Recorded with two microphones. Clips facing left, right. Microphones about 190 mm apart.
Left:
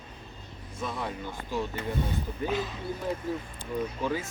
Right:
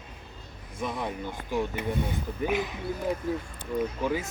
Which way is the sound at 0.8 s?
15° right (ahead or behind).